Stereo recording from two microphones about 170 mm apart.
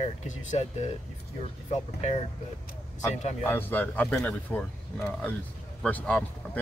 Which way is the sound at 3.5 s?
10° left (ahead or behind).